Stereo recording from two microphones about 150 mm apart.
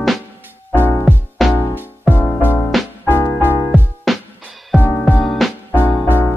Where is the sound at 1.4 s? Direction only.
Centre (ahead or behind).